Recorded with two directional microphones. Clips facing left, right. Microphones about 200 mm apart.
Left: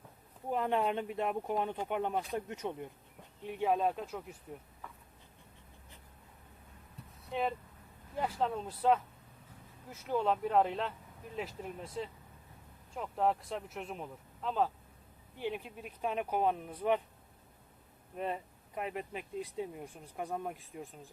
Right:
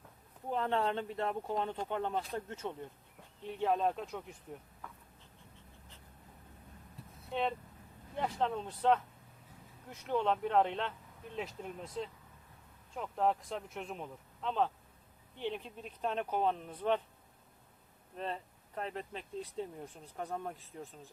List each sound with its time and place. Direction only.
0.5 s speech: 15° left (ahead or behind)
7.2 s vehicle: centre (ahead or behind)
8.1 s speech: 5° left (ahead or behind)
18.2 s speech: 10° left (ahead or behind)